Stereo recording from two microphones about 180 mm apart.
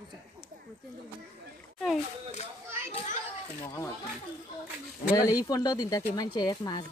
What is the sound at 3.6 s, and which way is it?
Speech, 15° left (ahead or behind).